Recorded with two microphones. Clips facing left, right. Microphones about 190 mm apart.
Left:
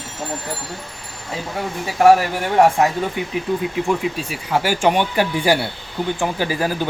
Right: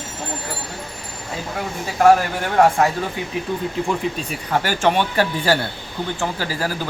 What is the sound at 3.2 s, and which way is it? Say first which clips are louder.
Speech: left 3 dB; 20° left (ahead or behind).